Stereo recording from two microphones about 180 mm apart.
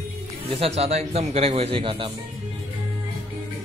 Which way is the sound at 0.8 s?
35° right (ahead or behind).